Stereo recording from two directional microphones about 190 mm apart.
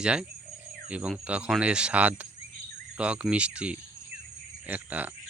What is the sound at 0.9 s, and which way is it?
Speech, 5° right (ahead or behind).